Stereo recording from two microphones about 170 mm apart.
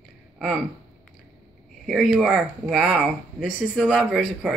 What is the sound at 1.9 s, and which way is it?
Speech, centre (ahead or behind).